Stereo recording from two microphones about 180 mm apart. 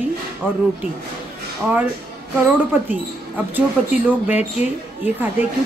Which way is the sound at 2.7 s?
10° right (ahead or behind).